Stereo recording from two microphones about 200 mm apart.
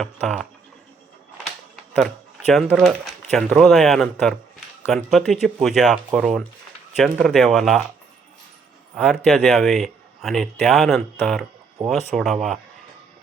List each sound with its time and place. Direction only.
0.0 s speech: centre (ahead or behind)
2.0 s speech: centre (ahead or behind)
9.0 s speech: centre (ahead or behind)
11.8 s speech: 35° right (ahead or behind)
12.1 s speech: centre (ahead or behind)